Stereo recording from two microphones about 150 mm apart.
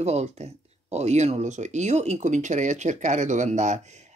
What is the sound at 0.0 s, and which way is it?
Speech, 45° right (ahead or behind).